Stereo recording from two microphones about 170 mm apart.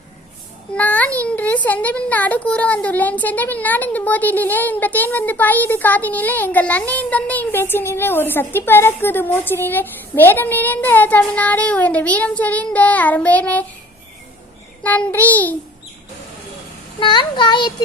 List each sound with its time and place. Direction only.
0.7 s a child's voice: 10° left (ahead or behind)
14.8 s speech: 10° left (ahead or behind)
17.0 s speech: 30° left (ahead or behind)